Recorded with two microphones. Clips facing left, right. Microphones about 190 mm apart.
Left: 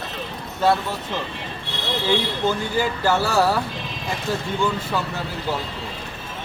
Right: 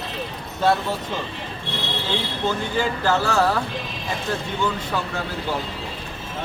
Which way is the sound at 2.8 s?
10° left (ahead or behind).